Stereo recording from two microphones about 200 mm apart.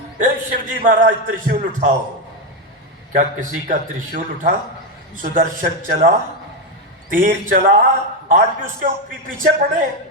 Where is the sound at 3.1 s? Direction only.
40° right (ahead or behind).